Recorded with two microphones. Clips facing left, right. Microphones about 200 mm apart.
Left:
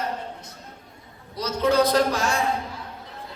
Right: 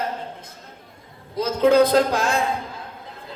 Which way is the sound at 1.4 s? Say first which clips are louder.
Right 5 dB; 55° right (ahead or behind).